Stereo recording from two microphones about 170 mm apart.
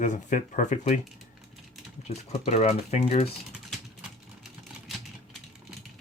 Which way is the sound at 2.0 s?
40° left (ahead or behind).